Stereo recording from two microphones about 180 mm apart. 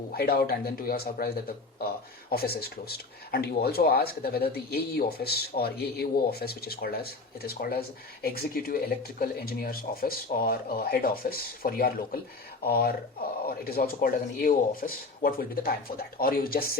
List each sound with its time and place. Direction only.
0.1 s speech: 60° left (ahead or behind)